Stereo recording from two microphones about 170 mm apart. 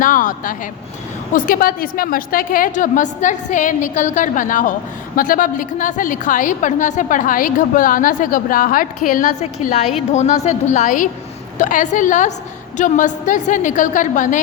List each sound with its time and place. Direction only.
0.0 s a woman's voice: 50° left (ahead or behind)